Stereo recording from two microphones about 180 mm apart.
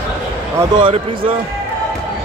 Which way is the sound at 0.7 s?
30° right (ahead or behind).